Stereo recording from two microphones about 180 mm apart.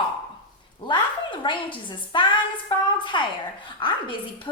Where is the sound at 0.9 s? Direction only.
25° left (ahead or behind).